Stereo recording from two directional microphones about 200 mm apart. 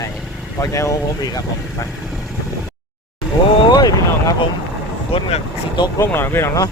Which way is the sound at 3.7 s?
20° left (ahead or behind).